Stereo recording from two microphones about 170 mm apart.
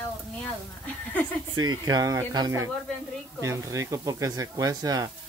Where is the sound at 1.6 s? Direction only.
25° right (ahead or behind).